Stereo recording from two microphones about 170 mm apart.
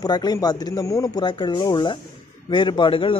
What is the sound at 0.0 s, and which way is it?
A man's voice, 25° left (ahead or behind).